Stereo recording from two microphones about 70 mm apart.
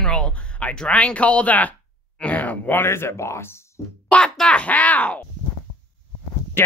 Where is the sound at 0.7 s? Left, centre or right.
Centre.